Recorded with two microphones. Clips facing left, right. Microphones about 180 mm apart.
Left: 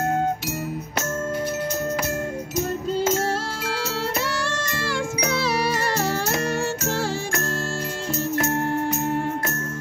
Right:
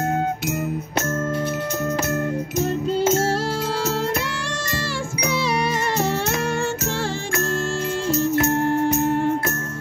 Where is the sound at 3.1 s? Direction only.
30° right (ahead or behind).